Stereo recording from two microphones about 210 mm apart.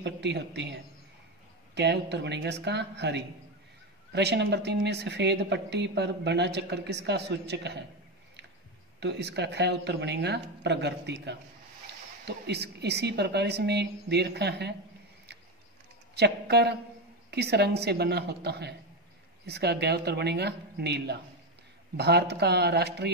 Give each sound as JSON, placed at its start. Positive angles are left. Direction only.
{"t": 0.0, "sound": "a man's voice", "side_deg": -55}
{"t": 1.8, "sound": "speech", "side_deg": -55}
{"t": 9.0, "sound": "speech", "side_deg": -55}
{"t": 16.2, "sound": "speech", "side_deg": -50}